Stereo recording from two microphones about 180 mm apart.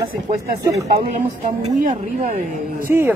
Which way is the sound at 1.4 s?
45° right (ahead or behind).